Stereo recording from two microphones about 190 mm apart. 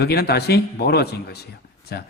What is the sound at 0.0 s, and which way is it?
A man's voice, 55° left (ahead or behind).